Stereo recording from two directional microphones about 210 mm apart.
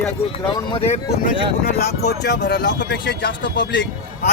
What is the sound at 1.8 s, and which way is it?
Speech, 50° left (ahead or behind).